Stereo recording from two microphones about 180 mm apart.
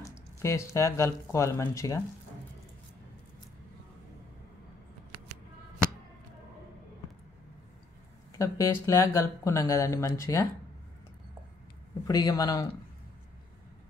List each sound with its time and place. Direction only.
0.0 s speech: 15° left (ahead or behind)
8.4 s speech: 15° left (ahead or behind)
12.1 s speech: 20° left (ahead or behind)